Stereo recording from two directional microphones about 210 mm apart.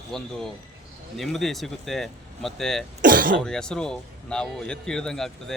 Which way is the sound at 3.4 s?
5° left (ahead or behind).